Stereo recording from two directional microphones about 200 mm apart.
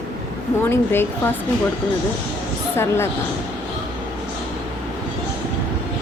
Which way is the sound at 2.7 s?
10° left (ahead or behind).